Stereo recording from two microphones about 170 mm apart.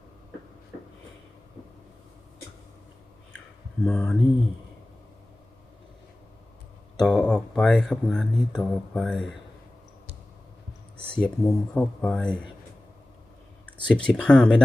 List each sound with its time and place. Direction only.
3.8 s speech: centre (ahead or behind)
7.0 s speech: 5° left (ahead or behind)
11.0 s speech: 5° left (ahead or behind)
13.8 s speech: 5° left (ahead or behind)